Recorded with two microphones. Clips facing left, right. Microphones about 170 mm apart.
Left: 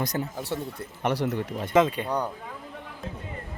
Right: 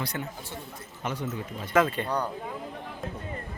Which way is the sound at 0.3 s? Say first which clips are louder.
Left 9 dB; 75° left (ahead or behind).